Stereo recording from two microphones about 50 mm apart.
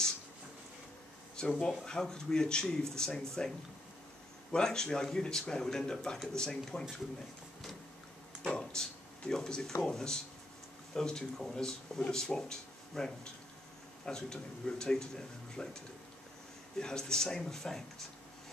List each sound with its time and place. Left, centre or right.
1.4 s speech: centre
8.5 s a sound: centre
9.8 s speech: centre